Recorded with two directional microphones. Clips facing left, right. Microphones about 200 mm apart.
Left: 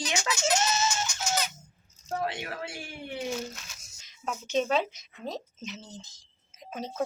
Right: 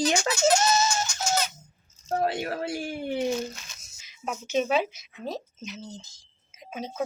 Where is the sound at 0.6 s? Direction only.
35° right (ahead or behind).